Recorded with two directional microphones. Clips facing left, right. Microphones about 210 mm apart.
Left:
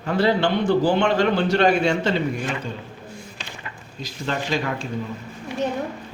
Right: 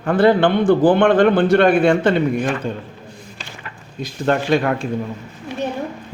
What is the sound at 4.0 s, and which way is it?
Speech, 55° right (ahead or behind).